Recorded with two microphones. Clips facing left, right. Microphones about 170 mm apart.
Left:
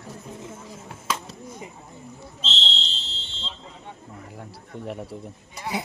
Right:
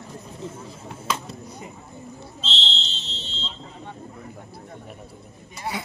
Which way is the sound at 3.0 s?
20° right (ahead or behind).